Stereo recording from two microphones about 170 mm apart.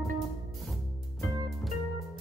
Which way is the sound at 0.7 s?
Centre (ahead or behind).